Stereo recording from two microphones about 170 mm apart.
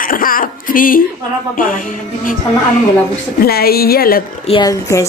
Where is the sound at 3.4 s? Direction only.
65° left (ahead or behind).